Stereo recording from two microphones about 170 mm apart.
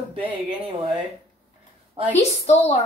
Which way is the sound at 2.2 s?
40° left (ahead or behind).